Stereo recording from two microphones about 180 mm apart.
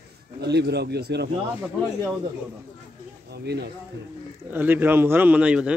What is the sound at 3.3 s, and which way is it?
Speech, 65° right (ahead or behind).